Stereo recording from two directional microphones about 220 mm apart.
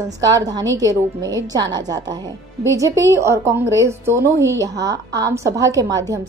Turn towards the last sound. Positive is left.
turn(degrees=-15)  # may be behind; listen again after turning